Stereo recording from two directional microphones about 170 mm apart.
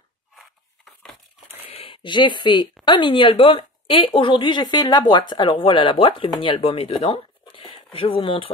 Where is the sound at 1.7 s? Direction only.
30° left (ahead or behind).